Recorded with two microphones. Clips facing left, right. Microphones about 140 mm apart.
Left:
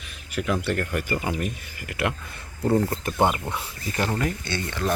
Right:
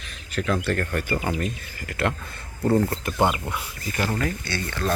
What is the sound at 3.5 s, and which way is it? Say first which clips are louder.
Speech: even; 30° left (ahead or behind).